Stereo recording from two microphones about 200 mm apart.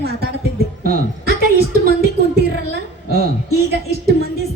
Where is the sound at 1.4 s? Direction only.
50° right (ahead or behind).